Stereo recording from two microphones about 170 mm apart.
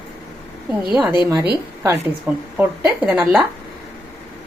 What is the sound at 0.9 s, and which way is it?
Speech, 5° right (ahead or behind).